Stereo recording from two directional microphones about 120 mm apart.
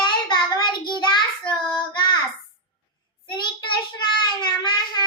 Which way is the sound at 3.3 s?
40° left (ahead or behind).